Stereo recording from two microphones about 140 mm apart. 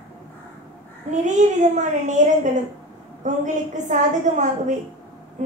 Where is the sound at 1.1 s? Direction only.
60° right (ahead or behind).